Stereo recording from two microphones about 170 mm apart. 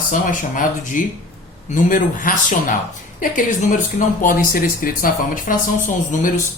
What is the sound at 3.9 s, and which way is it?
Speech, 50° left (ahead or behind).